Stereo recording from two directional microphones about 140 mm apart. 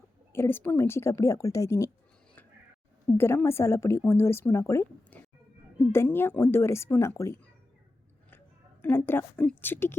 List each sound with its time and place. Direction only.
0.3 s speech: 15° left (ahead or behind)
3.2 s speech: 20° left (ahead or behind)
8.8 s speech: 15° left (ahead or behind)